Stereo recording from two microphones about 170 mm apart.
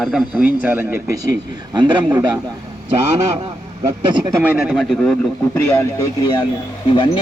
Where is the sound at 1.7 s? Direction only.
25° right (ahead or behind).